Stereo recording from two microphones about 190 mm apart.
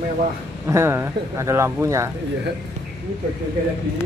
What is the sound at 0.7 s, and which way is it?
Speech, 15° right (ahead or behind).